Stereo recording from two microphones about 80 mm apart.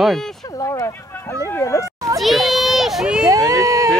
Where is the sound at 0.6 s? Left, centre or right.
Left.